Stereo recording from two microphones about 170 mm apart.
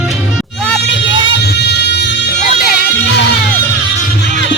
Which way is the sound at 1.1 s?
30° right (ahead or behind).